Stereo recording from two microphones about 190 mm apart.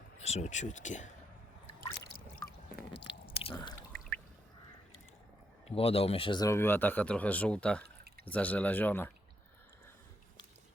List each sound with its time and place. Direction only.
0.2 s speech: 35° left (ahead or behind)
2.9 s chewing: 30° left (ahead or behind)
5.6 s speech: 30° left (ahead or behind); by 9.1 s 10° left (ahead or behind)